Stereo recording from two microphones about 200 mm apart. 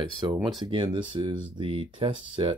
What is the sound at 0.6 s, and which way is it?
Speech, 25° right (ahead or behind).